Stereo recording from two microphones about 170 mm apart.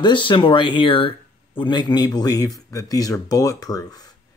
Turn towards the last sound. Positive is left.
turn(degrees=20)  # may be behind; listen again after turning